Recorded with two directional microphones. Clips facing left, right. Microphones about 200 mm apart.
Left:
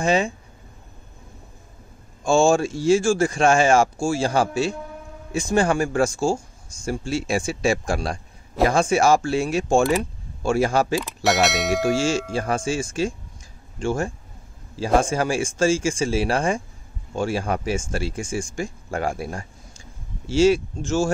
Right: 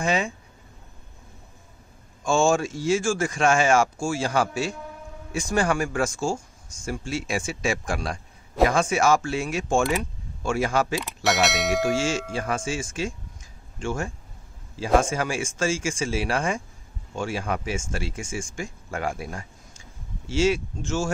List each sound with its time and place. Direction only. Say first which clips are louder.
0.0 s speech: left 4 dB; 30° left (ahead or behind)
2.2 s speech: left 4 dB; 30° left (ahead or behind)
11.0 s bell: left 3 dB; centre (ahead or behind)
12.4 s speech: left 4 dB; 35° left (ahead or behind)